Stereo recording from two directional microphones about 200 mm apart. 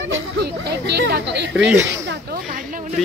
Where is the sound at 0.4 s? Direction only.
55° right (ahead or behind).